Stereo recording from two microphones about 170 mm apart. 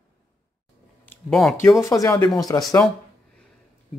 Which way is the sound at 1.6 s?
15° left (ahead or behind).